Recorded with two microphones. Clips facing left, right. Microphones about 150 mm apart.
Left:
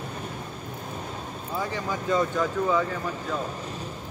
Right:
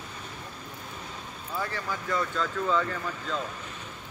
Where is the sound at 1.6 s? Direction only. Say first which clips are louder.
Left 3 dB; 20° left (ahead or behind).